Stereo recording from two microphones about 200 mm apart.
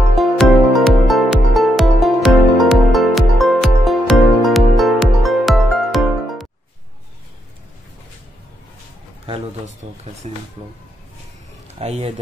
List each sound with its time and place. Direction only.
0.1 s music: centre (ahead or behind)
9.8 s speech: 25° right (ahead or behind)
11.6 s speech: 30° right (ahead or behind)